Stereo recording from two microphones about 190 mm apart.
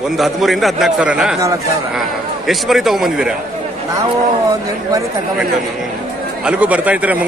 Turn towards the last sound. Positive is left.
turn(degrees=-10)  # may be behind; listen again after turning